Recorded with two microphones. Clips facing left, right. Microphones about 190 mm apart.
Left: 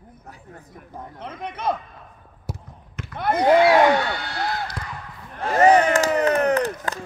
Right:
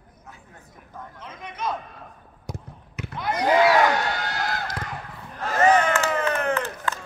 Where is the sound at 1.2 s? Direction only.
60° left (ahead or behind).